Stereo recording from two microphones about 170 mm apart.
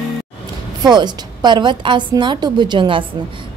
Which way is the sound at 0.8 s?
25° right (ahead or behind).